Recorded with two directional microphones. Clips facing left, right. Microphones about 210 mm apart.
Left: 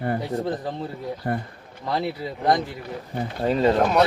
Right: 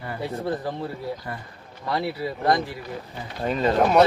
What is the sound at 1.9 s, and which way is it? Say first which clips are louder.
Speech: even; 20° left (ahead or behind).